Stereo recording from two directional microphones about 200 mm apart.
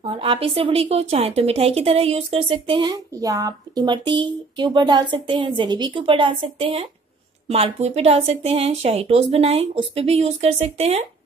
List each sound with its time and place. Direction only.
0.0 s a woman's voice: 30° right (ahead or behind)